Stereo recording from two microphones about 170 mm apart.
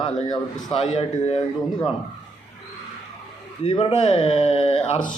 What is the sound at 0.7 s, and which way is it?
Speech, 40° left (ahead or behind).